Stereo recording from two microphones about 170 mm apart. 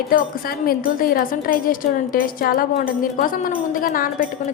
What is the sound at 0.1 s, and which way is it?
A woman's voice, 55° left (ahead or behind).